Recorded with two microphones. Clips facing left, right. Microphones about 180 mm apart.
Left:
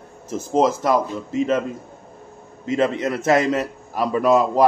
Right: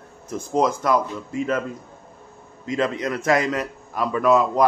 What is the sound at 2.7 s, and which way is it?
Speech, 25° left (ahead or behind).